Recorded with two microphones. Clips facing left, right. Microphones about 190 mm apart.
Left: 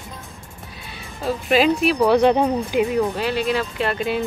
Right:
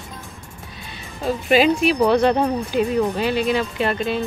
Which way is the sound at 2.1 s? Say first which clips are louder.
Left 1 dB; 15° left (ahead or behind).